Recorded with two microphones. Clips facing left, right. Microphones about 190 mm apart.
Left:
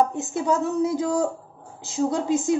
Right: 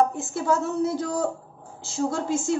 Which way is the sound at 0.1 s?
20° left (ahead or behind).